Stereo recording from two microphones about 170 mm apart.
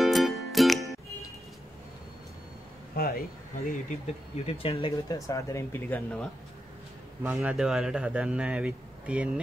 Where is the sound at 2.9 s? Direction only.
60° left (ahead or behind).